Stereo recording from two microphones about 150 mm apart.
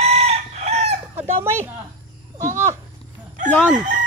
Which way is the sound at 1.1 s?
15° right (ahead or behind).